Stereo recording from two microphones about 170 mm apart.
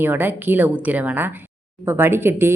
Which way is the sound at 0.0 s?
10° right (ahead or behind).